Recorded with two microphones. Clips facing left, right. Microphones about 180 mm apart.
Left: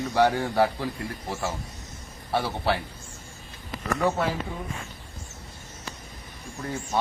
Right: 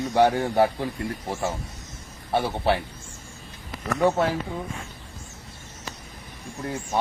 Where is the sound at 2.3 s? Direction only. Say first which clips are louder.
Right 3 dB; 20° right (ahead or behind).